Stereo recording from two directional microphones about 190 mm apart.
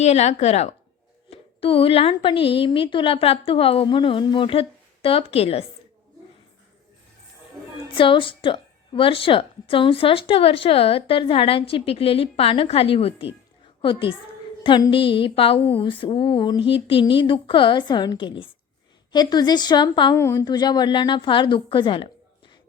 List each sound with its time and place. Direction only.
0.0 s a woman's voice: 35° left (ahead or behind)
7.9 s a woman's voice: 25° left (ahead or behind)